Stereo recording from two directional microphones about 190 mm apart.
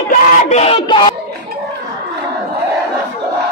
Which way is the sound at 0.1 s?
45° left (ahead or behind).